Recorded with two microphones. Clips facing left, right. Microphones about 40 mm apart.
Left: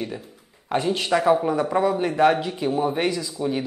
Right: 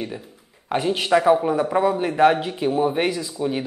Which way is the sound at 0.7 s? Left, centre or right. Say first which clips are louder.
Right 2 dB; centre.